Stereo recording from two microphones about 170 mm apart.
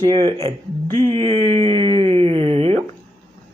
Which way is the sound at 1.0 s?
35° right (ahead or behind).